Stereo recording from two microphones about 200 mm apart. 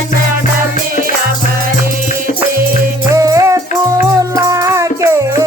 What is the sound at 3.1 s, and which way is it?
Music, 15° right (ahead or behind).